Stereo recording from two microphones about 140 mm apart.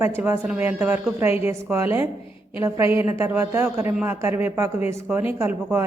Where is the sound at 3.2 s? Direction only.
15° right (ahead or behind).